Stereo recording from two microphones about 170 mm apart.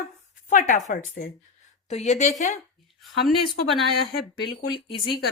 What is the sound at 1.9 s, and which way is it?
Speech, 40° left (ahead or behind).